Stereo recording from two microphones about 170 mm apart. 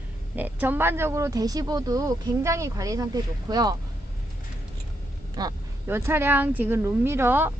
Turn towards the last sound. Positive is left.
turn(degrees=-10)  # may be behind; listen again after turning